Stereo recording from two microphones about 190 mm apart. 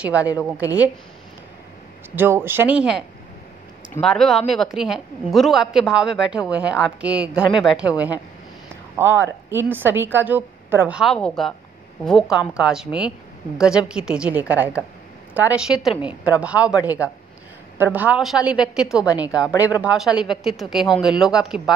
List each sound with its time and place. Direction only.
0.2 s a woman's voice: 15° left (ahead or behind)
0.6 s a woman's voice: 10° right (ahead or behind)
2.1 s a woman's voice: 10° right (ahead or behind)
8.9 s a woman's voice: 10° right (ahead or behind)